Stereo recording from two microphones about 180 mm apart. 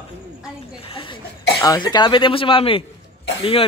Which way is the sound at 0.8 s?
30° left (ahead or behind).